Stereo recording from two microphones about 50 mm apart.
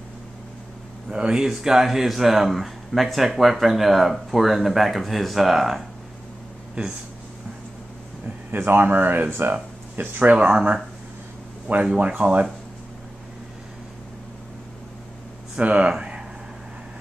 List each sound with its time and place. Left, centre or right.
1.1 s speech: centre
8.5 s speech: right
15.6 s speech: right
15.9 s a sound: centre